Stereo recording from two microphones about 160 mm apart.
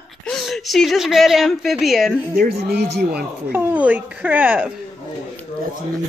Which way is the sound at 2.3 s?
80° right.